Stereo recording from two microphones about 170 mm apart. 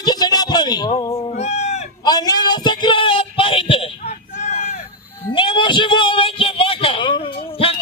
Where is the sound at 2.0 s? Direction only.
25° left (ahead or behind); by 4.8 s 40° left (ahead or behind).